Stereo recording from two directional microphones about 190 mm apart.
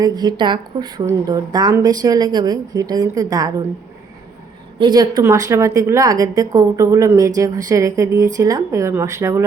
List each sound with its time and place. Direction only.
0.0 s speech: 20° right (ahead or behind)
4.8 s a woman's voice: 20° right (ahead or behind)